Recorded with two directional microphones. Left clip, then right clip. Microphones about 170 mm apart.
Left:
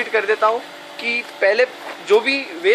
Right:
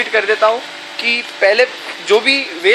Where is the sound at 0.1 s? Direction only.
40° right (ahead or behind).